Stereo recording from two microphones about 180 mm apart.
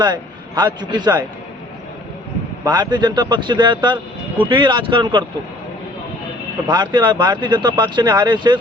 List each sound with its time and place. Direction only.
0.0 s speech: 25° right (ahead or behind)
2.6 s speech: 25° right (ahead or behind)
6.7 s speech: 25° right (ahead or behind)